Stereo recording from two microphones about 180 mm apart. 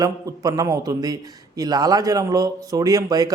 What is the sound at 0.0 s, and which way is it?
Speech, 20° right (ahead or behind).